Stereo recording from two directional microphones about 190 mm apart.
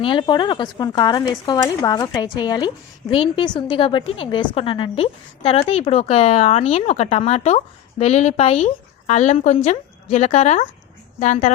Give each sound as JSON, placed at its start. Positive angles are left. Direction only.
{"t": 0.0, "sound": "a woman's voice", "side_deg": 25}